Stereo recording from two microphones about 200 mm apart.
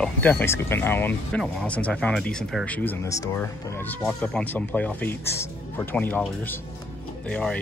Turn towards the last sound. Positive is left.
turn(degrees=10)  # may be behind; listen again after turning